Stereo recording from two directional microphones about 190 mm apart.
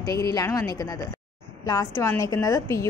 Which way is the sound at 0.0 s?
20° left (ahead or behind).